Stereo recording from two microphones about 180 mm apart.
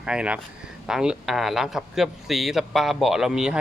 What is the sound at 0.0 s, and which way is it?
A man's voice, 5° right (ahead or behind).